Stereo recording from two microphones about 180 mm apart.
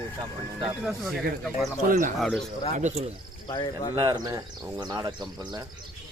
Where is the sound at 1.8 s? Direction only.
45° right (ahead or behind).